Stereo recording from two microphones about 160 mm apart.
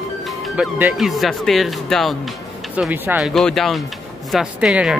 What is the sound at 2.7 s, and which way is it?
Speech, 10° right (ahead or behind).